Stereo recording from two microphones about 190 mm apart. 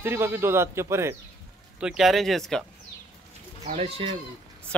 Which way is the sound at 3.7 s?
30° right (ahead or behind).